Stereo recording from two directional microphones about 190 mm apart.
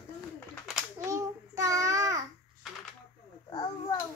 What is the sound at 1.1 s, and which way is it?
Child singing, 15° right (ahead or behind).